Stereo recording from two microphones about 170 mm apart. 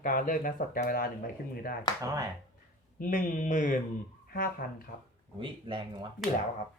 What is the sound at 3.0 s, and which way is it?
Speech, 50° left (ahead or behind).